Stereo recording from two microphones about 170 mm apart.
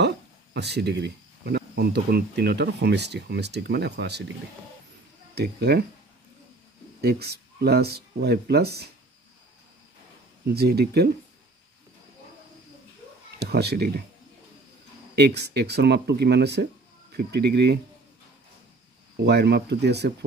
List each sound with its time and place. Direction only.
0.0 s speech: 80° right
5.3 s speech: 70° right (ahead or behind)
7.0 s speech: 70° right (ahead or behind)
10.4 s speech: 70° right (ahead or behind)
13.4 s speech: 70° right (ahead or behind)
15.1 s speech: 80° right
19.2 s speech: 75° right (ahead or behind)